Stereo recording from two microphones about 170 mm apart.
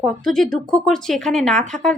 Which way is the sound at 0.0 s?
5° left (ahead or behind).